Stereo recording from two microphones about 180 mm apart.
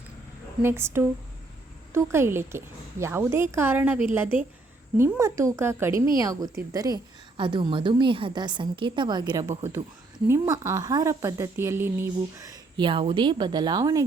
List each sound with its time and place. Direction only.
0.6 s a woman's voice: 15° right (ahead or behind)